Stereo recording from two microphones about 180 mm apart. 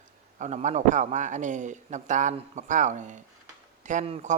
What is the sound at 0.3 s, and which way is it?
A man's voice, 40° right (ahead or behind).